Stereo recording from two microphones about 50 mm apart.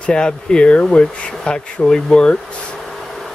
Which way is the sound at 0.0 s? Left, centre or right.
Centre.